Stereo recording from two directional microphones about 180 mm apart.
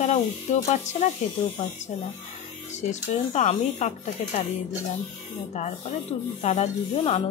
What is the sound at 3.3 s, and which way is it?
Speech, 40° left (ahead or behind).